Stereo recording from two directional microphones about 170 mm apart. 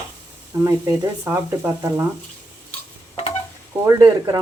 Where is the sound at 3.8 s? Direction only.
25° right (ahead or behind).